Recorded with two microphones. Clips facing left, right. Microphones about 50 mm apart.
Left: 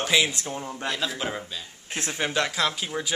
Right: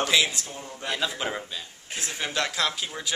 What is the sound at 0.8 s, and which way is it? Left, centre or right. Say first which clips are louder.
Speech: right 1 dB; centre.